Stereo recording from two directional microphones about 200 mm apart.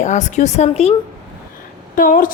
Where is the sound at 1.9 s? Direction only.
45° left (ahead or behind).